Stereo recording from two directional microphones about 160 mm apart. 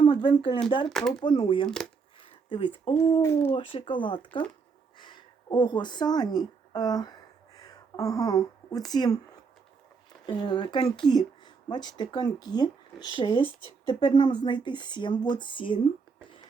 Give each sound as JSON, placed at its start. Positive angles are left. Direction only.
{"t": 0.0, "sound": "speech", "side_deg": 30}
{"t": 0.9, "sound": "speech", "side_deg": 0}
{"t": 1.2, "sound": "speech", "side_deg": 30}
{"t": 3.2, "sound": "speech", "side_deg": 15}
{"t": 3.5, "sound": "speech", "side_deg": 35}
{"t": 7.5, "sound": "a sound", "side_deg": 25}
{"t": 10.2, "sound": "speech", "side_deg": 25}